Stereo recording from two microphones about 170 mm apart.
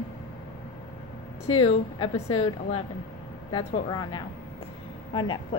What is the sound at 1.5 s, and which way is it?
A woman's voice, 35° left (ahead or behind).